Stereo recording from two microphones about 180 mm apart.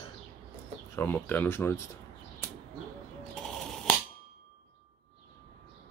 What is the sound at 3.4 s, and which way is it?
Finger snapping, 5° left (ahead or behind).